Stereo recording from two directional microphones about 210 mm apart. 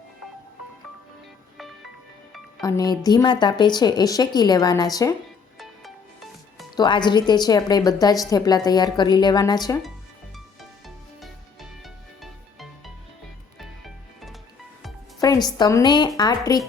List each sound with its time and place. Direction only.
2.6 s a woman's voice: 15° left (ahead or behind)
6.7 s a woman's voice: 20° left (ahead or behind)
10.3 s music: centre (ahead or behind)
15.2 s a woman's voice: 20° left (ahead or behind)